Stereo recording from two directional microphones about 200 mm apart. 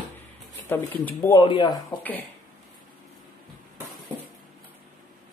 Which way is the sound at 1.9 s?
10° left (ahead or behind).